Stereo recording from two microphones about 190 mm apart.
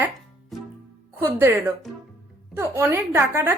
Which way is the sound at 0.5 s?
Centre (ahead or behind).